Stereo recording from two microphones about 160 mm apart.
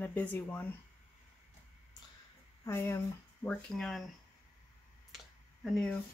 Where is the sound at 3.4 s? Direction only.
5° left (ahead or behind).